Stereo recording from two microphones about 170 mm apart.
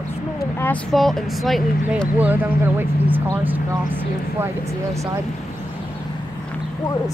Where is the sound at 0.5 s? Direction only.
10° left (ahead or behind).